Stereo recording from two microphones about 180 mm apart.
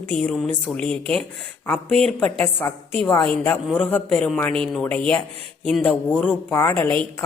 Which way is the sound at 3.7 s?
10° left (ahead or behind).